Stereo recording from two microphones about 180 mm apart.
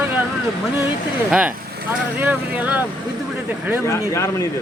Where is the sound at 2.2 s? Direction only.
10° right (ahead or behind).